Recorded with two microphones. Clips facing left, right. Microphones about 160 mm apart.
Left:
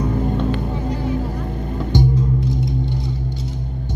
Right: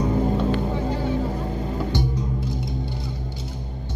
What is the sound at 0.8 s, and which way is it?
Vehicle, 30° right (ahead or behind).